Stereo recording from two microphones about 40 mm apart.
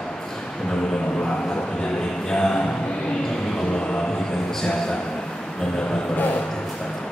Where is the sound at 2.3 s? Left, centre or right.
Centre.